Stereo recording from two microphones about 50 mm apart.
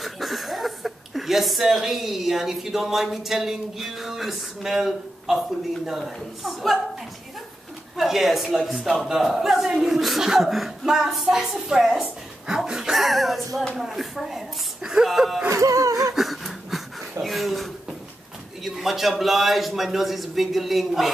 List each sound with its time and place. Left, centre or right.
0.0 s a man's voice: centre
7.9 s a man's voice: centre
15.5 s a sound: right
16.2 s wheeze: centre
17.2 s a man's voice: centre